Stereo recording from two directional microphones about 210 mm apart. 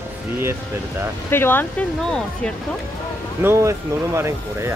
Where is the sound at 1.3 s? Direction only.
10° left (ahead or behind).